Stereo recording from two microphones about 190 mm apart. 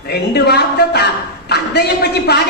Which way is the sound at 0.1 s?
55° left (ahead or behind).